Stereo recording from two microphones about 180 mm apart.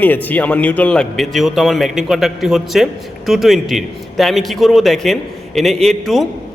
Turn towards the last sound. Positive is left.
turn(degrees=0)  # may be behind; listen again after turning